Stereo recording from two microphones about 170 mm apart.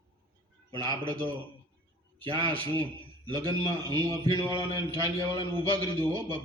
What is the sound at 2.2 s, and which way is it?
A man's voice, 25° right (ahead or behind).